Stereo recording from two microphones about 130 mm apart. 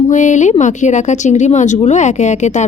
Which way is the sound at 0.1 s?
70° left (ahead or behind).